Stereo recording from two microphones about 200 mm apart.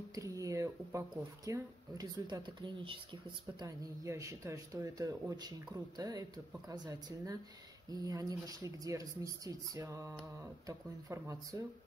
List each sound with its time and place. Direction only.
0.1 s speech: 15° right (ahead or behind)